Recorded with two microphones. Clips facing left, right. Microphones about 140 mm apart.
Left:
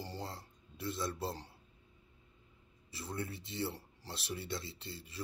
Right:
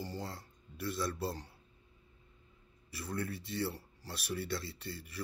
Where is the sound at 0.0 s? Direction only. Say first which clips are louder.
Right 2 dB; 25° left (ahead or behind).